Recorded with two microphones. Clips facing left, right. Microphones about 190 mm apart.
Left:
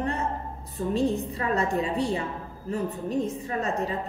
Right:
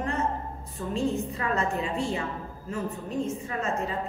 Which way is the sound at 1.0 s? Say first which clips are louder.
Left 1 dB; 35° left (ahead or behind).